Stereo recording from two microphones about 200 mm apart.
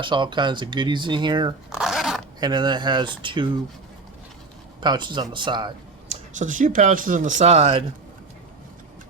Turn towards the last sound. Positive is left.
turn(degrees=-30)  # may be behind; listen again after turning